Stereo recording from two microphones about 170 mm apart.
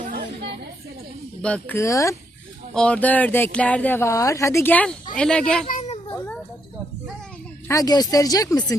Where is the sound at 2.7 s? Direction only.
5° left (ahead or behind).